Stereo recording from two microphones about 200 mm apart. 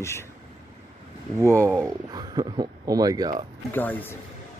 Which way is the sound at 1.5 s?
15° right (ahead or behind).